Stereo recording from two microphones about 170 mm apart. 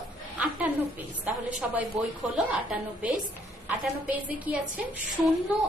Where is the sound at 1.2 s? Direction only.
10° right (ahead or behind).